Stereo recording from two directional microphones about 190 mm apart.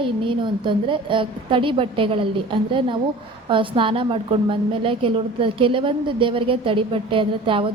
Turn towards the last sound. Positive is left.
turn(degrees=-25)  # may be behind; listen again after turning